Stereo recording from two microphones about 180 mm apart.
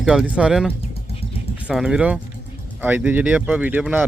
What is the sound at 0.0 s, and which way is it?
Speech, 5° right (ahead or behind).